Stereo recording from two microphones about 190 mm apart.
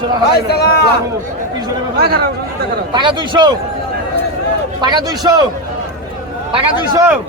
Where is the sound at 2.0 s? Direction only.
55° right (ahead or behind).